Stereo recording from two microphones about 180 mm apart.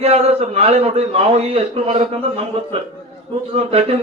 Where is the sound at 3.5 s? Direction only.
35° right (ahead or behind).